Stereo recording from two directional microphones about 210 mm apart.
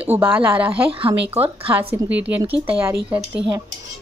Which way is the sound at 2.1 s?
5° right (ahead or behind).